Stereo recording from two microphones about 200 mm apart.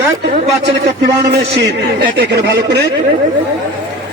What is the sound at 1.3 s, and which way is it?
Speech, 55° right (ahead or behind).